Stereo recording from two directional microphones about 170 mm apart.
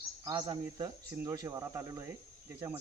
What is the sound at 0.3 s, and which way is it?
Speech, 25° right (ahead or behind).